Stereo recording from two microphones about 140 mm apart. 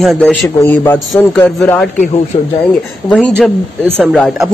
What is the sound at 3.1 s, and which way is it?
Speech, 5° left (ahead or behind).